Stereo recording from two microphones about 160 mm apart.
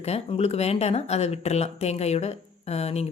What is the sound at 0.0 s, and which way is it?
Speech, 40° left (ahead or behind).